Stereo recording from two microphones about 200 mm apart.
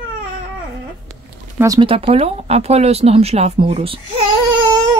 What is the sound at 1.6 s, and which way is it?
Speech, 20° right (ahead or behind).